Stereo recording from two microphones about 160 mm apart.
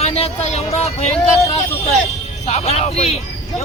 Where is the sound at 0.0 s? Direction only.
40° left (ahead or behind).